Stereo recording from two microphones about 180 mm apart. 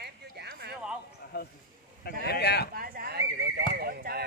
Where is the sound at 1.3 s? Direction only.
60° left (ahead or behind).